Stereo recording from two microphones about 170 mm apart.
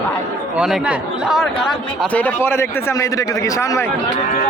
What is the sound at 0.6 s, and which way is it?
Speech, 5° right (ahead or behind).